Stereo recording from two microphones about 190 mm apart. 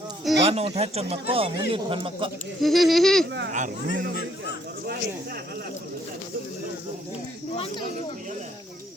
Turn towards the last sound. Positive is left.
turn(degrees=30)  # may be behind; listen again after turning